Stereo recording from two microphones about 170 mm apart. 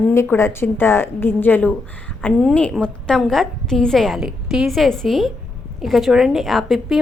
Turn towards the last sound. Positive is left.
turn(degrees=0)  # may be behind; listen again after turning